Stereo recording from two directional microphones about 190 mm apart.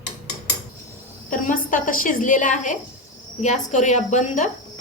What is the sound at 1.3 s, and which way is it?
A woman's voice, 45° left (ahead or behind).